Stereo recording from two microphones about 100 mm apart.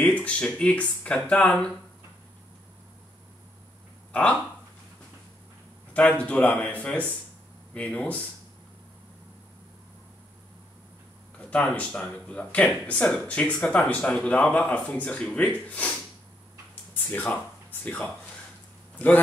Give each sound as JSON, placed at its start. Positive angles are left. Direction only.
{"t": 0.0, "sound": "speech", "side_deg": 15}
{"t": 4.1, "sound": "speech", "side_deg": 10}
{"t": 5.9, "sound": "speech", "side_deg": 10}
{"t": 11.3, "sound": "speech", "side_deg": 10}